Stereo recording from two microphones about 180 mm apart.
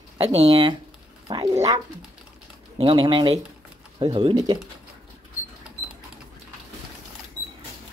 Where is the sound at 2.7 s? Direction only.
30° right (ahead or behind).